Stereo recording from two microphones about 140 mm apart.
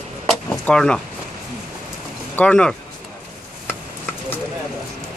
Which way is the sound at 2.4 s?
5° left (ahead or behind).